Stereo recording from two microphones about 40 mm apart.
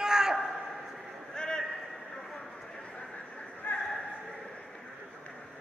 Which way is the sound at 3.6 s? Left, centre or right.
Left.